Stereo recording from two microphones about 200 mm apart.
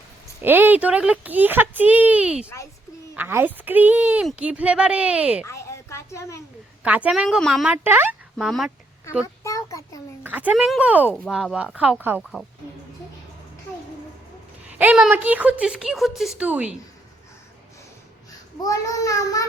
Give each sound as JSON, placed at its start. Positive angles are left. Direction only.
{"t": 0.4, "sound": "speech", "side_deg": -10}
{"t": 5.5, "sound": "a sound", "side_deg": 15}
{"t": 6.8, "sound": "speech", "side_deg": -5}
{"t": 8.4, "sound": "speech", "side_deg": 0}
{"t": 9.2, "sound": "a sound", "side_deg": 15}
{"t": 10.2, "sound": "speech", "side_deg": -10}
{"t": 14.7, "sound": "speech", "side_deg": -10}
{"t": 18.3, "sound": "a child's voice", "side_deg": 15}